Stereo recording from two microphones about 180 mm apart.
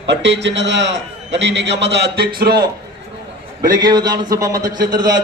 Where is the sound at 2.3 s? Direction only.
60° right (ahead or behind).